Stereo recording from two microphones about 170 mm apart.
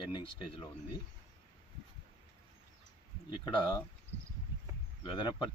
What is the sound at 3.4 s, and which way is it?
Speech, 30° left (ahead or behind).